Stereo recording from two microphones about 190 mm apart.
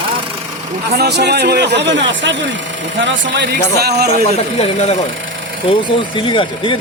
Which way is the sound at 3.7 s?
55° right (ahead or behind).